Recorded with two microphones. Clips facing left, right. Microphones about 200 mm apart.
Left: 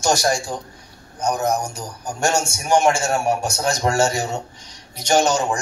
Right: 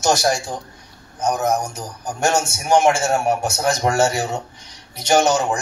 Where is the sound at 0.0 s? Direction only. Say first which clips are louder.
Right 1 dB; 20° right (ahead or behind).